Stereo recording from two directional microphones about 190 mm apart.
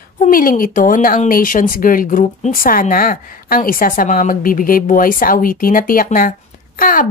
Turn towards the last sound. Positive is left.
turn(degrees=45)  # may be behind; listen again after turning